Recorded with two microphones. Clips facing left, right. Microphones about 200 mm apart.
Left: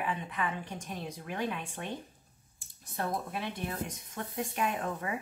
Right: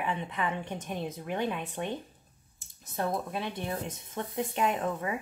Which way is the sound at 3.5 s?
25° right (ahead or behind).